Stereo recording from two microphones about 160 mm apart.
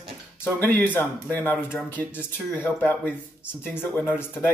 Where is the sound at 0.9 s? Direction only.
10° left (ahead or behind).